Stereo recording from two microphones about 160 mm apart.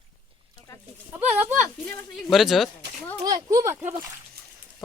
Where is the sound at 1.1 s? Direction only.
10° right (ahead or behind).